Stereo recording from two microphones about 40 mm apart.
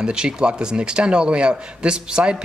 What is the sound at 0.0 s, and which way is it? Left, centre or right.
A man's voice, right.